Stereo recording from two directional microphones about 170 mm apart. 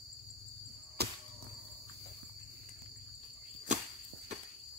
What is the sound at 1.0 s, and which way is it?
Cricket, 70° right (ahead or behind).